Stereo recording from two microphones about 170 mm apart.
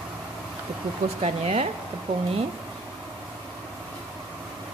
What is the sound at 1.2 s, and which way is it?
Speech, 40° right (ahead or behind).